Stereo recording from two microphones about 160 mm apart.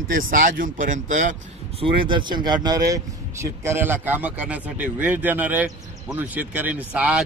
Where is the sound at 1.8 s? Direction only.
30° right (ahead or behind).